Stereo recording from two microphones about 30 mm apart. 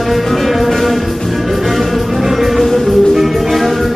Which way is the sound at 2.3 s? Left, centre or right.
Centre.